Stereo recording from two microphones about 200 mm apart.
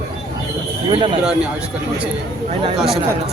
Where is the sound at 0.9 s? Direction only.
25° right (ahead or behind).